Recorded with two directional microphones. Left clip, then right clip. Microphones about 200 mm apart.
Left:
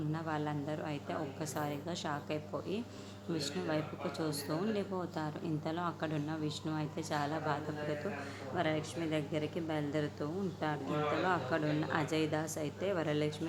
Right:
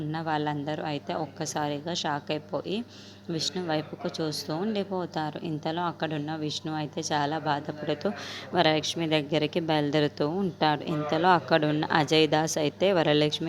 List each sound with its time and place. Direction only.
0.1 s a woman's voice: 35° right (ahead or behind)